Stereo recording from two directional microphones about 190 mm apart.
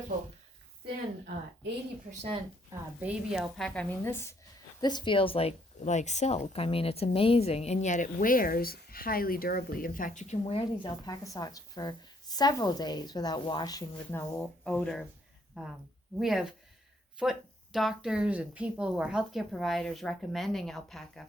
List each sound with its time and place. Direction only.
2.0 s speech: 30° right (ahead or behind)
3.0 s speech: 5° right (ahead or behind)
16.1 s speech: centre (ahead or behind)